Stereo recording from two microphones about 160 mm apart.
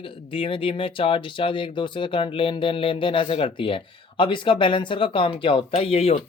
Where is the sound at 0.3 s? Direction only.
35° left (ahead or behind).